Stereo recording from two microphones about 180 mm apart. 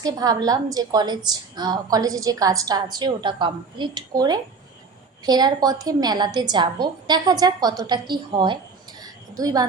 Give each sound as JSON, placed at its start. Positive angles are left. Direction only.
{"t": 0.0, "sound": "a woman's voice", "side_deg": -20}